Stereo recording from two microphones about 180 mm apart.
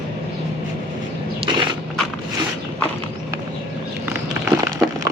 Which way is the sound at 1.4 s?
25° right (ahead or behind).